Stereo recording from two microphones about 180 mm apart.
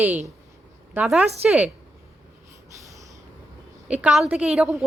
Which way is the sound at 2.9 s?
15° right (ahead or behind).